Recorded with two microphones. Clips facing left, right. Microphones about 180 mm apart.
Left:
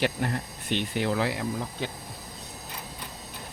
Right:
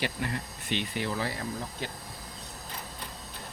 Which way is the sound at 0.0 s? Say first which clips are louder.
Left 5 dB; 50° left (ahead or behind).